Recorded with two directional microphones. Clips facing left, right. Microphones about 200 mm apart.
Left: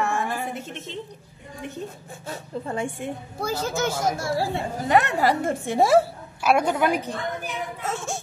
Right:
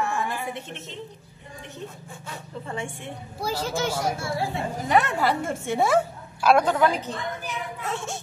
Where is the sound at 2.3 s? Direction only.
40° left (ahead or behind).